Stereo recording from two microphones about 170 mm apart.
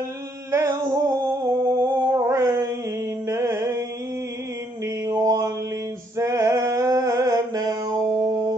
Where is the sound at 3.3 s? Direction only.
15° right (ahead or behind).